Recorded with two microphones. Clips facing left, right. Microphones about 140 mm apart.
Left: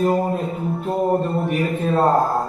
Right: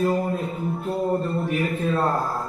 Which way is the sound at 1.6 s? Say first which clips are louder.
Left 5 dB; 35° left (ahead or behind).